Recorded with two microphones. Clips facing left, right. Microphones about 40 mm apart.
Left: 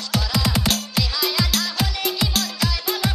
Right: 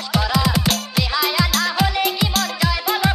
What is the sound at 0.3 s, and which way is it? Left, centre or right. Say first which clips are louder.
Music: right 2 dB; centre.